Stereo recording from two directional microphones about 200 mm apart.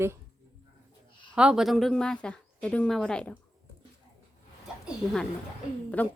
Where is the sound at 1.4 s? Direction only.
5° right (ahead or behind).